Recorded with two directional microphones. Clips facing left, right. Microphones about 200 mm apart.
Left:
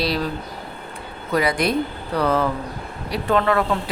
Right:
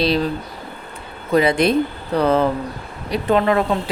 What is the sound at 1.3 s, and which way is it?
A woman's voice, 25° right (ahead or behind).